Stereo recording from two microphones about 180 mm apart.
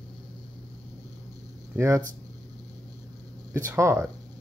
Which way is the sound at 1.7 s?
15° right (ahead or behind).